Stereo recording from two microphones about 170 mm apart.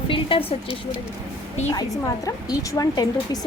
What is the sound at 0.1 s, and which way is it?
Speech, 30° left (ahead or behind).